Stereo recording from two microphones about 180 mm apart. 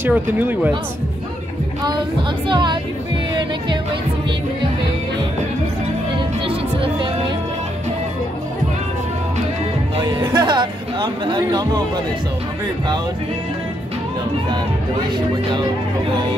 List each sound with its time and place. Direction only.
0.0 s speech: 10° right (ahead or behind)
2.4 s speech: 25° right (ahead or behind)
6.1 s music: 30° right (ahead or behind)
9.9 s speech: 25° right (ahead or behind)